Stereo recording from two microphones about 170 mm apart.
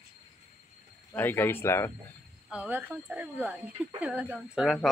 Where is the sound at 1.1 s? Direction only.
10° left (ahead or behind).